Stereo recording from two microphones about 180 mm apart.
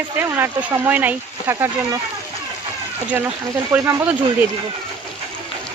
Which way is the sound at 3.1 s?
15° right (ahead or behind).